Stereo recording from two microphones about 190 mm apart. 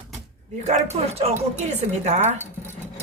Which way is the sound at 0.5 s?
35° right (ahead or behind).